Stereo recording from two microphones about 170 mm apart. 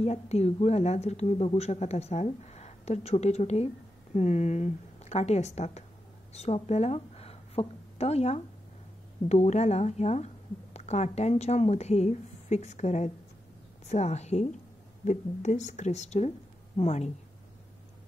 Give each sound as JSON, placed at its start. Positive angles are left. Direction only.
{"t": 0.0, "sound": "a woman's voice", "side_deg": 40}